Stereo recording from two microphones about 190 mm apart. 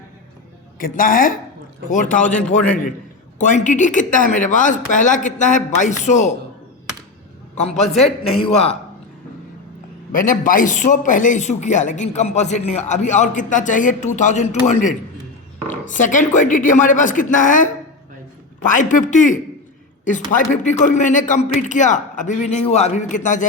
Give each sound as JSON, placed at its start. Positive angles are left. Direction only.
{"t": 0.8, "sound": "speech", "side_deg": 50}
{"t": 3.3, "sound": "a man's voice", "side_deg": 40}
{"t": 7.5, "sound": "a man's voice", "side_deg": 35}
{"t": 10.1, "sound": "a man's voice", "side_deg": 45}